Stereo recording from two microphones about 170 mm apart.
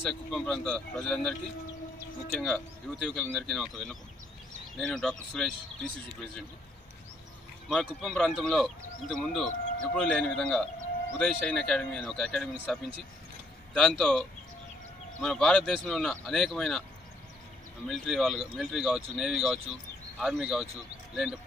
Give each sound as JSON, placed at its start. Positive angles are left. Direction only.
{"t": 0.1, "sound": "speech", "side_deg": 5}
{"t": 2.3, "sound": "speech", "side_deg": 5}
{"t": 7.6, "sound": "speech", "side_deg": 0}
{"t": 17.8, "sound": "speech", "side_deg": 0}